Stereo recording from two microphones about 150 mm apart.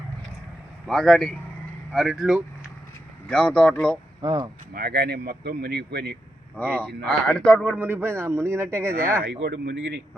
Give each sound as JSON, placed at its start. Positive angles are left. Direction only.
{"t": 0.9, "sound": "speech", "side_deg": 0}
{"t": 4.2, "sound": "speech", "side_deg": -30}
{"t": 4.7, "sound": "speech", "side_deg": -90}
{"t": 6.6, "sound": "speech", "side_deg": 10}
{"t": 7.7, "sound": "speech", "side_deg": -15}